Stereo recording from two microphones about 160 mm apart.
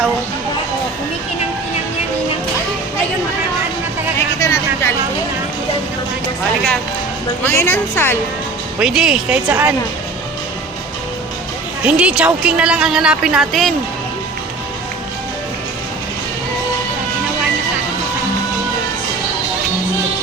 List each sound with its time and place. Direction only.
4.4 s a sound: 20° left (ahead or behind)
7.4 s a woman's voice: 15° left (ahead or behind)
8.8 s a woman's voice: 5° right (ahead or behind)
9.5 s a woman's voice: 15° right (ahead or behind)
11.9 s a woman's voice: 10° right (ahead or behind)